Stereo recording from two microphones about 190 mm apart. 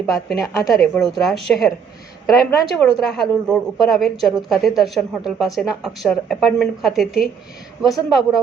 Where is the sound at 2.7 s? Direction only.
Centre (ahead or behind).